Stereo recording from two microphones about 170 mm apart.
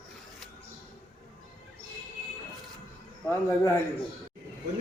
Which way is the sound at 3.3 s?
15° left (ahead or behind).